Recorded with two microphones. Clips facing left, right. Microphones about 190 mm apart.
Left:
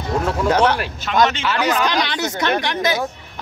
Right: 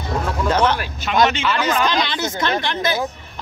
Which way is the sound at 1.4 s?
10° left (ahead or behind).